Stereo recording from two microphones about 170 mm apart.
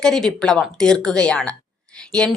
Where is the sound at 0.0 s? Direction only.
5° left (ahead or behind).